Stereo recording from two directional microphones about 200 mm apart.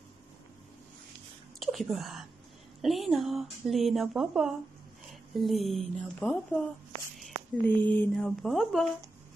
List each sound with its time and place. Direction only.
1.6 s speech: centre (ahead or behind)
7.2 s a sound: centre (ahead or behind)
8.0 s speech: 5° left (ahead or behind)